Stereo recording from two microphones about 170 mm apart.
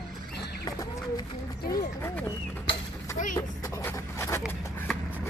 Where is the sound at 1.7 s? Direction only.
15° left (ahead or behind).